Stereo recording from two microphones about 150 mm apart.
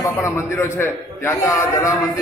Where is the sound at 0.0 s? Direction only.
20° left (ahead or behind).